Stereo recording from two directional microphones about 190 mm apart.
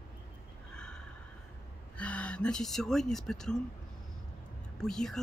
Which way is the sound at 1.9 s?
5° left (ahead or behind).